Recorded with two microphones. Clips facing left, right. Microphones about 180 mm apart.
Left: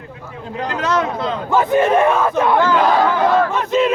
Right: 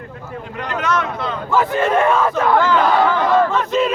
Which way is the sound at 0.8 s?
30° left (ahead or behind).